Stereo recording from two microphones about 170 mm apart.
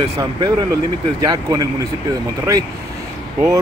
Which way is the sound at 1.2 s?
20° right (ahead or behind).